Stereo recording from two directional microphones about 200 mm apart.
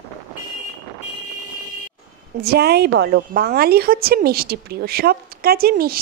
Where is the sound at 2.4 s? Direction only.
55° right (ahead or behind).